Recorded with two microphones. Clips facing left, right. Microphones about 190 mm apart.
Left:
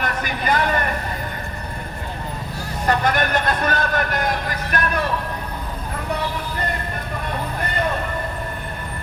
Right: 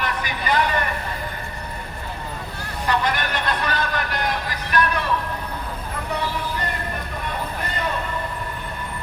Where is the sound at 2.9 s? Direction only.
50° left (ahead or behind).